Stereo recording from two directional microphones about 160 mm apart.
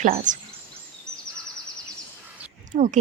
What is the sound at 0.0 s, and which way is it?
Speech, 50° right (ahead or behind).